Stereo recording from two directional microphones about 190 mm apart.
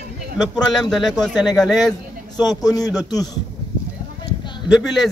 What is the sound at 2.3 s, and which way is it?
Speech, 20° left (ahead or behind).